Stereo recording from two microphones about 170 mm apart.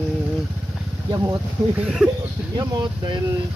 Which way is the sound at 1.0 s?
20° right (ahead or behind).